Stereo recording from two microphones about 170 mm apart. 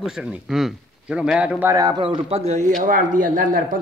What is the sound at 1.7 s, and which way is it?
Speech, 20° right (ahead or behind).